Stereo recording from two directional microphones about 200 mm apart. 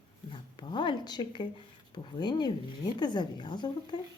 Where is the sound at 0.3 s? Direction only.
20° left (ahead or behind).